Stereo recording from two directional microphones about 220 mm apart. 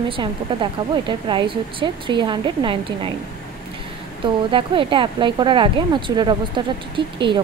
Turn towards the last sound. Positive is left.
turn(degrees=-20)  # may be behind; listen again after turning